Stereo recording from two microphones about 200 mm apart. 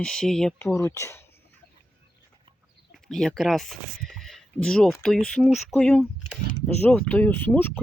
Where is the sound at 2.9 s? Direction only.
Centre (ahead or behind).